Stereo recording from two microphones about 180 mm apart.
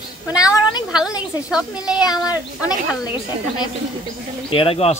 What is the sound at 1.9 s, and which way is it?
Speech, 20° left (ahead or behind).